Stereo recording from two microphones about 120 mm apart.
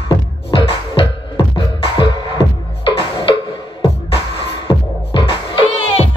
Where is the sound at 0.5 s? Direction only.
45° left (ahead or behind).